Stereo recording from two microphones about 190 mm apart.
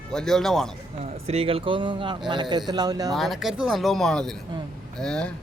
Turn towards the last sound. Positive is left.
turn(degrees=5)  # may be behind; listen again after turning